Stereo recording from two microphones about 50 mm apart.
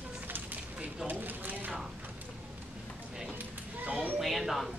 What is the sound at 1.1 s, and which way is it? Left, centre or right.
Speech, right.